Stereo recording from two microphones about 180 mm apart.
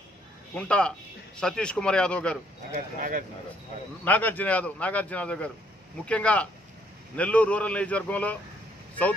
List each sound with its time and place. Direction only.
0.6 s speech: 5° left (ahead or behind)
2.7 s speech: 50° right (ahead or behind)
4.0 s a man's voice: 10° left (ahead or behind)